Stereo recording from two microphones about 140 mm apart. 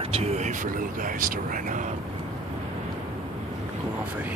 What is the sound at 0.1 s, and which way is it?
Speech, 50° right (ahead or behind).